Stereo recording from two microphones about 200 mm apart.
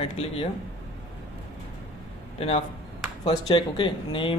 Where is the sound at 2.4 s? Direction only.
30° left (ahead or behind).